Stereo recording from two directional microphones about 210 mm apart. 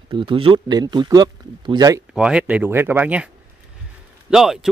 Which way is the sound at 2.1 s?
5° right (ahead or behind).